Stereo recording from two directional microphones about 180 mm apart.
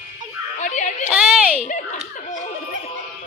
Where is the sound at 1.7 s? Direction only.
40° left (ahead or behind).